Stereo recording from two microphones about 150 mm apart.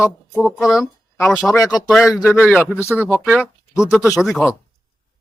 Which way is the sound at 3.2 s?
10° right (ahead or behind).